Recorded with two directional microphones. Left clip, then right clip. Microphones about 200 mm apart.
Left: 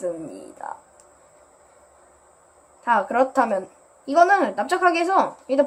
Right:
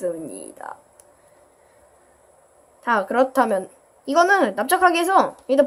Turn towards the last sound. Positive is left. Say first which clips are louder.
# right 3 dB
turn(degrees=-25)  # may be behind; listen again after turning